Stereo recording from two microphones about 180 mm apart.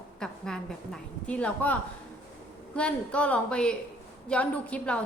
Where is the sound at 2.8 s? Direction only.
5° left (ahead or behind).